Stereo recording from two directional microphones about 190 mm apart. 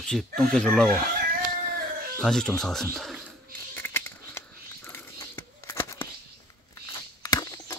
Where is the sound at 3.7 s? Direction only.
10° left (ahead or behind).